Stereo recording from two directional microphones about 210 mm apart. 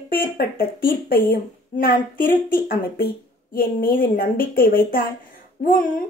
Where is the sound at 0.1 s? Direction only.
45° left (ahead or behind).